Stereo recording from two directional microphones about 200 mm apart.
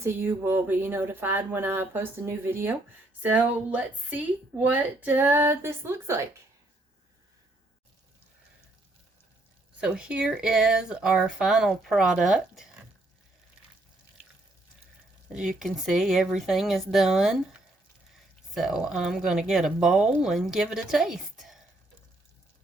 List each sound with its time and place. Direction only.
0.0 s a woman's voice: 10° right (ahead or behind)
9.8 s speech: 5° right (ahead or behind)
15.3 s speech: 5° right (ahead or behind)